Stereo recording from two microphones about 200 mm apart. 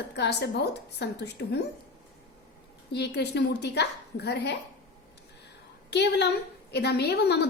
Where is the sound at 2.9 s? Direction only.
55° left (ahead or behind).